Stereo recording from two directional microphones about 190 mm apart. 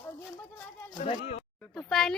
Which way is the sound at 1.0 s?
35° left (ahead or behind).